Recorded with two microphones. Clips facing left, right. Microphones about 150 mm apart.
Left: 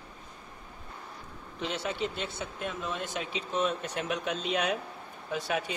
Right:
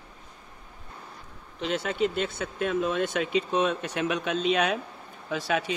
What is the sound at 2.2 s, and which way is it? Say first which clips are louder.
Speech: right 6 dB; 65° right (ahead or behind).